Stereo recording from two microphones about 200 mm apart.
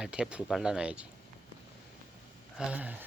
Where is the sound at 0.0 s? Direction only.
5° right (ahead or behind).